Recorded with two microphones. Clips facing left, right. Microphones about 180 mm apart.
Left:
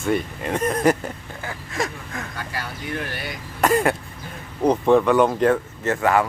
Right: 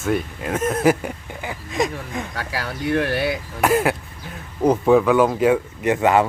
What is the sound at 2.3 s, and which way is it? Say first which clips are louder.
Speech: right 4 dB; 70° right (ahead or behind).